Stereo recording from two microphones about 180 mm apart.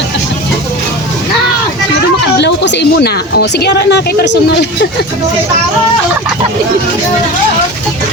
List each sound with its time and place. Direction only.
2.4 s speech: 70° left (ahead or behind)